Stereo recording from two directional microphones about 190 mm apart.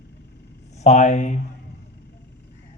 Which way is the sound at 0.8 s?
40° left (ahead or behind).